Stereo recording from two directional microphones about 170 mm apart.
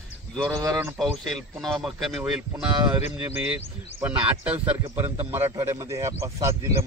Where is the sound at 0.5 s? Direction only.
20° right (ahead or behind).